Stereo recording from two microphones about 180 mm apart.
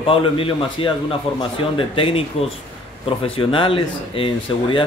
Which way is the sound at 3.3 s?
30° left (ahead or behind).